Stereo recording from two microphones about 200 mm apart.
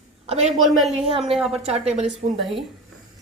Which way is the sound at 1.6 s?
30° right (ahead or behind).